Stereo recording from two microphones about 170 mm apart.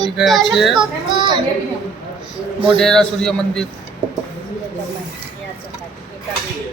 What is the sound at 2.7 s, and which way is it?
Speech, 5° left (ahead or behind).